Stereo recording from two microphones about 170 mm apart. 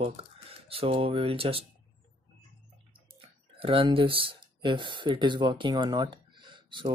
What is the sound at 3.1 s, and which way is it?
Speech, 35° right (ahead or behind).